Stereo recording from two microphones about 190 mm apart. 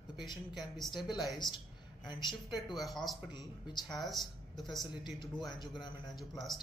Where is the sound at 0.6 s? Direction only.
Centre (ahead or behind).